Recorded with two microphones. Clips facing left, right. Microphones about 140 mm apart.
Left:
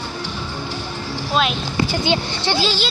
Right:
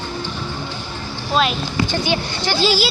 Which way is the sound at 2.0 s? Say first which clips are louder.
Left 1 dB; 25° left (ahead or behind).